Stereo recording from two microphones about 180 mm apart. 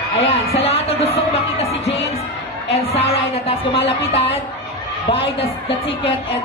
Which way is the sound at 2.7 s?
35° left (ahead or behind).